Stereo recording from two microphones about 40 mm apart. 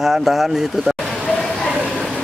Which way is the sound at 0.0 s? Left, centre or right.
Centre.